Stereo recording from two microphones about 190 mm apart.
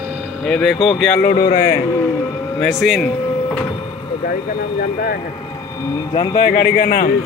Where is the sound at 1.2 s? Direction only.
50° left (ahead or behind).